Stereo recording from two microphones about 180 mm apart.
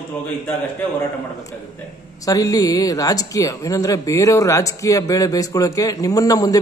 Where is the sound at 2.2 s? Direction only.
20° left (ahead or behind).